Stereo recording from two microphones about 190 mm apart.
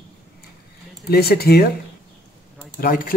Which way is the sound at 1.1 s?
55° left (ahead or behind).